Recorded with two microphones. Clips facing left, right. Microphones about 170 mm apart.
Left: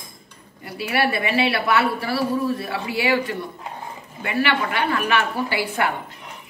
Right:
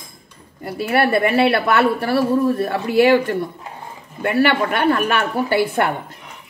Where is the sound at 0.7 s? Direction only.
50° right (ahead or behind).